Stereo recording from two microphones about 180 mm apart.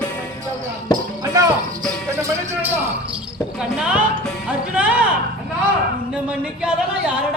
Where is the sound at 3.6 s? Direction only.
5° right (ahead or behind).